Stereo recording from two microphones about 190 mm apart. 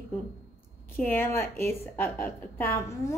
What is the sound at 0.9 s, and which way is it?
A woman's voice, 10° left (ahead or behind).